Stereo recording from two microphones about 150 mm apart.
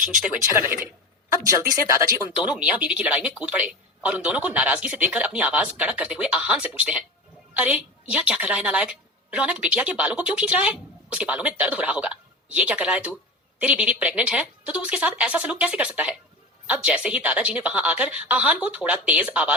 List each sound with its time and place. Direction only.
0.0 s a woman's voice: 10° right (ahead or behind)
2.4 s a woman's voice: 10° right (ahead or behind)